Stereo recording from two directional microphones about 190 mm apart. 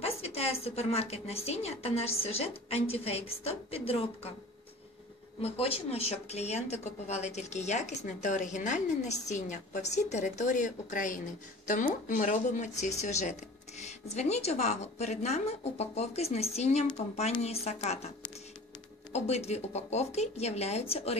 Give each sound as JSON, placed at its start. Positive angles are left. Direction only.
{"t": 0.0, "sound": "a woman's voice", "side_deg": 35}
{"t": 5.4, "sound": "a woman's voice", "side_deg": 30}
{"t": 19.1, "sound": "a woman's voice", "side_deg": 35}